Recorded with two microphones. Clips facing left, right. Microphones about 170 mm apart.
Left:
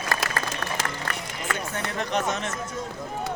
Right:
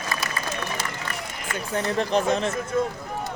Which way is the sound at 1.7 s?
35° right (ahead or behind).